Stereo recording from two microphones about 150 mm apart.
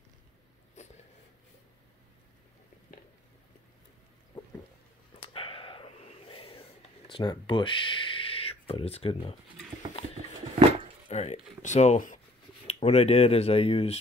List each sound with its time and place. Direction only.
5.3 s a sound: 40° left (ahead or behind)
7.1 s speech: 30° left (ahead or behind)
11.1 s speech: 40° left (ahead or behind)
12.6 s speech: 45° left (ahead or behind)